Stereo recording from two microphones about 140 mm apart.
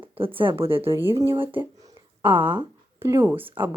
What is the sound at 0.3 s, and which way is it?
Speech, 40° right (ahead or behind).